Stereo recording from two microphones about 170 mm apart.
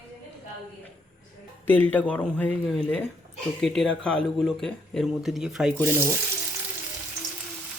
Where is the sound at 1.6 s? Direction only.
10° left (ahead or behind).